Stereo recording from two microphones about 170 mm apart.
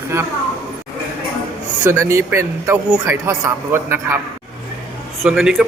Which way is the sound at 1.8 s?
15° right (ahead or behind).